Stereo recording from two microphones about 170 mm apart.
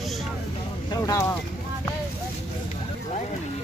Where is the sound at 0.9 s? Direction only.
20° left (ahead or behind).